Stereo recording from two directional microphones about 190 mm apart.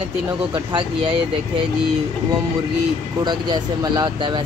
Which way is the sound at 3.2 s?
20° right (ahead or behind).